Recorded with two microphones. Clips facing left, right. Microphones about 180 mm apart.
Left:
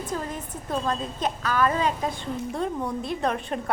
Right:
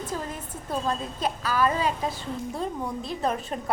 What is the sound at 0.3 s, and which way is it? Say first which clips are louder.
A woman's voice: left 2 dB; 10° right (ahead or behind).